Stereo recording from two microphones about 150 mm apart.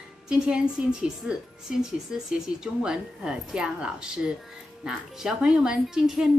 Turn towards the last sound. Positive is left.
turn(degrees=-5)  # may be behind; listen again after turning